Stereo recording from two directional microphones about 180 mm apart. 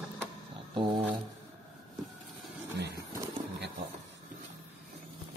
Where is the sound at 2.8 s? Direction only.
70° right (ahead or behind).